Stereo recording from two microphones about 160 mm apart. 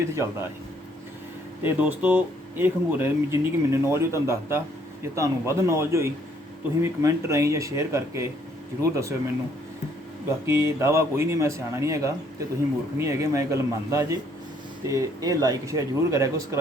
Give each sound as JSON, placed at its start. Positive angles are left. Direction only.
{"t": 0.2, "sound": "speech", "side_deg": -15}
{"t": 1.6, "sound": "speech", "side_deg": -10}
{"t": 10.4, "sound": "speech", "side_deg": -15}